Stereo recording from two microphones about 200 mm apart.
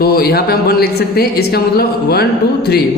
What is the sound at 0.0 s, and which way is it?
Speech, 50° left (ahead or behind).